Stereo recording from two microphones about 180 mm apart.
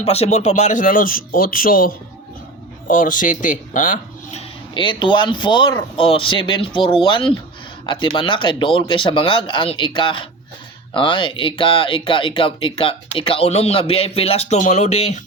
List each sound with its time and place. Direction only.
0.0 s speech: 35° left (ahead or behind)